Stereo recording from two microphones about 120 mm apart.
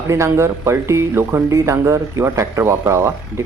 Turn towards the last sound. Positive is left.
turn(degrees=-20)  # may be behind; listen again after turning